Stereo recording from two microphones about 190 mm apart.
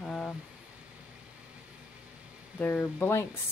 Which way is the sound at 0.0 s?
Centre (ahead or behind).